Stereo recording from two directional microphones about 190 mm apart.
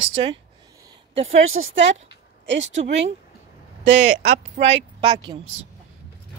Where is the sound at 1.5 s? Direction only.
85° right.